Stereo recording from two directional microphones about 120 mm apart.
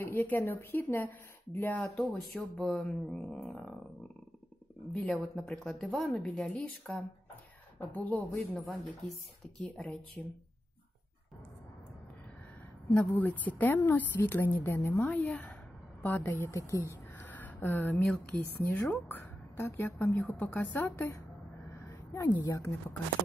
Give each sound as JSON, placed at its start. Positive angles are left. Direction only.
{"t": 0.0, "sound": "speech", "side_deg": 15}
{"t": 2.0, "sound": "speech", "side_deg": 0}
{"t": 4.9, "sound": "speech", "side_deg": 5}
{"t": 9.1, "sound": "speech", "side_deg": 5}
{"t": 12.9, "sound": "a woman's voice", "side_deg": 15}